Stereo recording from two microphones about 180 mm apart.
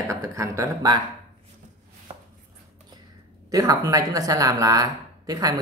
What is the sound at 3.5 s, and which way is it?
Speech, 20° right (ahead or behind).